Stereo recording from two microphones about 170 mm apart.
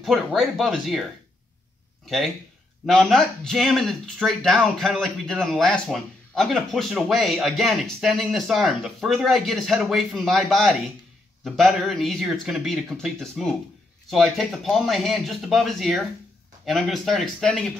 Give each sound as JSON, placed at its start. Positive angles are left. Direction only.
{"t": 0.0, "sound": "speech", "side_deg": 0}
{"t": 2.0, "sound": "speech", "side_deg": 5}